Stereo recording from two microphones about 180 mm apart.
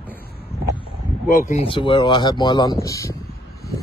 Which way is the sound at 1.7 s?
25° left (ahead or behind).